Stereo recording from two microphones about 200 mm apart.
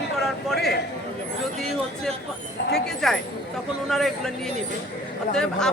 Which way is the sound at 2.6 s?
55° left (ahead or behind).